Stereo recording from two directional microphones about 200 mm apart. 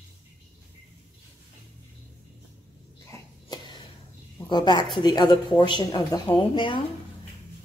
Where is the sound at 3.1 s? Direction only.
20° left (ahead or behind).